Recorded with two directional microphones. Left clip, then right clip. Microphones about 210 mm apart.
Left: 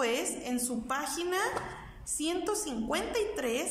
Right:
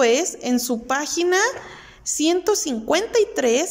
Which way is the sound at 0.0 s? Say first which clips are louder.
Right 13 dB; 40° right (ahead or behind).